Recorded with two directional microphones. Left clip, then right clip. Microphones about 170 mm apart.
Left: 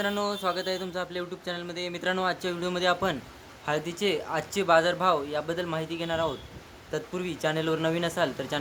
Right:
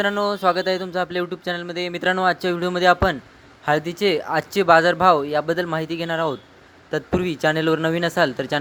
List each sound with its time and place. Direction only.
0.2 s speech: 30° right (ahead or behind)